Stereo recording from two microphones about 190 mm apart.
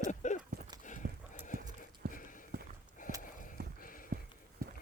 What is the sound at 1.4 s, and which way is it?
Horse, 40° left (ahead or behind).